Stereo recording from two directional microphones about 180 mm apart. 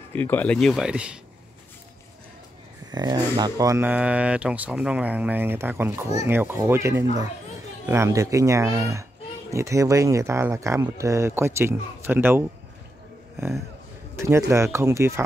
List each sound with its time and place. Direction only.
0.1 s speech: 10° left (ahead or behind); by 1.2 s 5° right (ahead or behind)
2.9 s speech: 25° right (ahead or behind)
14.1 s a sound: 15° right (ahead or behind)
14.5 s speech: 15° right (ahead or behind)